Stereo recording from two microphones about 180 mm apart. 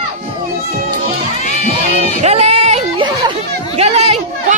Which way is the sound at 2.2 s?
35° right (ahead or behind).